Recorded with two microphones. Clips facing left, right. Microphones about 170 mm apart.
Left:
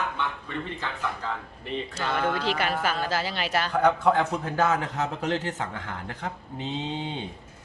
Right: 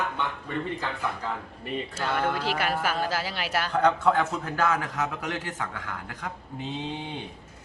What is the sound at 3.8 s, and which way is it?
A man's voice, 15° left (ahead or behind).